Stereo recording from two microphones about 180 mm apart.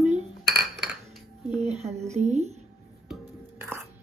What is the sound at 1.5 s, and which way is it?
A woman's voice, 35° right (ahead or behind).